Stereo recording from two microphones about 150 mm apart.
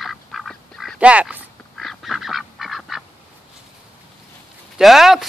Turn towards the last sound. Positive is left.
turn(degrees=0)  # may be behind; listen again after turning